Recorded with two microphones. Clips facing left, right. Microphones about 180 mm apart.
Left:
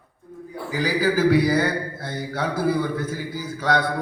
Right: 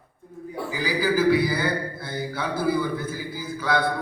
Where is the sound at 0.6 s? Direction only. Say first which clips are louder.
Left 3 dB; 45° left (ahead or behind).